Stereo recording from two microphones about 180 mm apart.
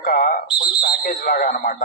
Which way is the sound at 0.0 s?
55° left (ahead or behind).